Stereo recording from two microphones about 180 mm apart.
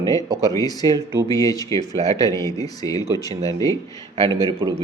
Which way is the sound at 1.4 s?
20° left (ahead or behind).